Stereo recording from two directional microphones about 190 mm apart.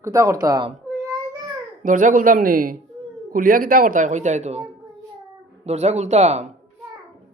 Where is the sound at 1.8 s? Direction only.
45° right (ahead or behind).